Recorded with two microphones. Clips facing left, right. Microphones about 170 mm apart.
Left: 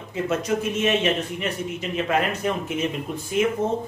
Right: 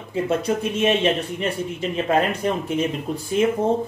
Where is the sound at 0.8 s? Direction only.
30° right (ahead or behind).